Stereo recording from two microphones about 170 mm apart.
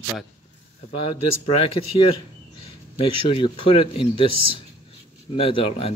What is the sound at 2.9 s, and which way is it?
Speech, 30° left (ahead or behind).